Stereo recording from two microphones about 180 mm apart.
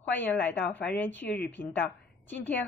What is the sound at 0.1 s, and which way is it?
A woman's voice, 10° left (ahead or behind).